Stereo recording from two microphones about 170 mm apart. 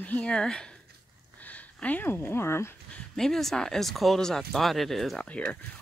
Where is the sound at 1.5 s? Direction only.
10° left (ahead or behind).